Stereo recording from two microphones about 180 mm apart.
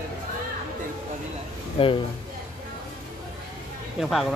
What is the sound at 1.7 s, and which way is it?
Speech, 30° left (ahead or behind).